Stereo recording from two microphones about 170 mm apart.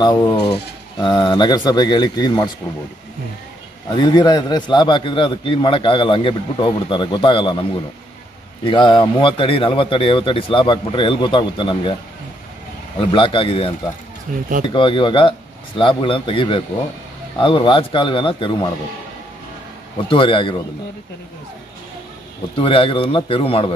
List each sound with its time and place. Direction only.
0.0 s a man's voice: 25° left (ahead or behind)
3.9 s a man's voice: 25° left (ahead or behind)
8.6 s a man's voice: 30° left (ahead or behind)
13.1 s speech: 30° left (ahead or behind)
14.3 s speech: 50° right (ahead or behind)
14.6 s a man's voice: 30° left (ahead or behind)
20.1 s speech: 30° left (ahead or behind)
22.6 s speech: 30° left (ahead or behind)